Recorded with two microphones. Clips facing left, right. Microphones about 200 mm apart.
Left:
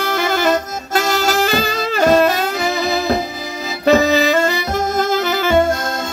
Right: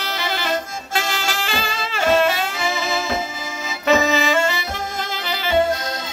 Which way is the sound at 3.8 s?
35° left (ahead or behind).